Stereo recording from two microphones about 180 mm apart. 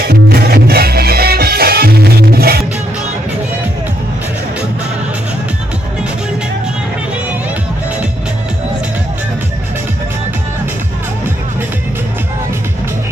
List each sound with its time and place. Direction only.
0.0 s music: 60° right (ahead or behind)